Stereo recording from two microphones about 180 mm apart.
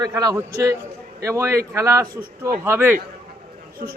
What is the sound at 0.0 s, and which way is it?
A man's voice, 20° right (ahead or behind).